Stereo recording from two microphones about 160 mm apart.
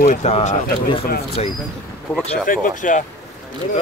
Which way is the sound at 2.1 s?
10° left (ahead or behind).